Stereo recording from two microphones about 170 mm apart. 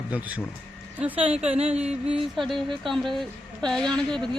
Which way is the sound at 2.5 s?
30° right (ahead or behind).